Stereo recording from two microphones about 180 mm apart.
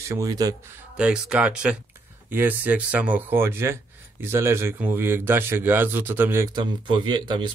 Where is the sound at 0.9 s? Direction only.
5° right (ahead or behind).